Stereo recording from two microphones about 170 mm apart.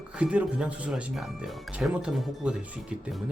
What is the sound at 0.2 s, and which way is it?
Speech, 5° right (ahead or behind).